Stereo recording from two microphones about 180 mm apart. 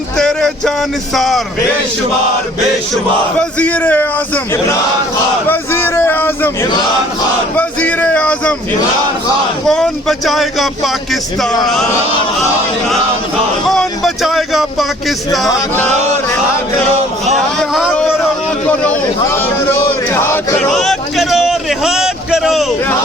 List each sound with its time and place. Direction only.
0.2 s a sound: 5° left (ahead or behind)
1.1 s speech: centre (ahead or behind)
3.6 s a man's voice: 10° left (ahead or behind)
5.5 s a man's voice: 10° left (ahead or behind)
9.6 s speech: 5° left (ahead or behind)
13.7 s speech: centre (ahead or behind)
15.9 s music: 40° right (ahead or behind)
17.6 s speech: centre (ahead or behind)
18.7 s a sound: 5° left (ahead or behind)